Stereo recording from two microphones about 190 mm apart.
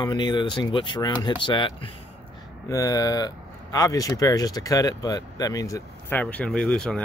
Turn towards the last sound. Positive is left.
turn(degrees=5)  # may be behind; listen again after turning